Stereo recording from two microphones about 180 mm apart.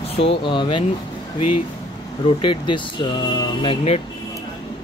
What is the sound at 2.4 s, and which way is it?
Speech, 25° left (ahead or behind).